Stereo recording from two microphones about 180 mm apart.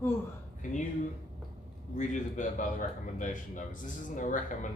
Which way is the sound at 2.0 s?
45° left (ahead or behind).